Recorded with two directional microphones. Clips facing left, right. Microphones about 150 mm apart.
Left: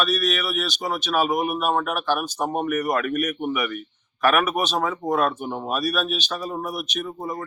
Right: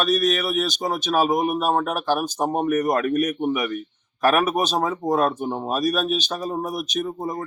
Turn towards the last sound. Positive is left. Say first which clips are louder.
# right 3 dB
turn(degrees=-40)  # may be behind; listen again after turning